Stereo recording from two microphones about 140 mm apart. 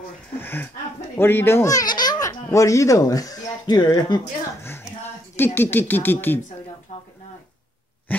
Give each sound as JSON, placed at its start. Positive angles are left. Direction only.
{"t": 0.4, "sound": "speech", "side_deg": 15}
{"t": 5.3, "sound": "speech", "side_deg": 15}
{"t": 8.1, "sound": "dog", "side_deg": 10}